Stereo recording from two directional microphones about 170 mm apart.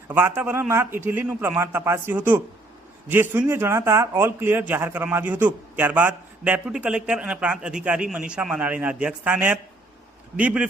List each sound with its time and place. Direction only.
0.1 s speech: 15° right (ahead or behind)